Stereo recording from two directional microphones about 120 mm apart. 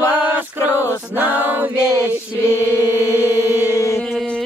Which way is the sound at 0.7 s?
25° left (ahead or behind).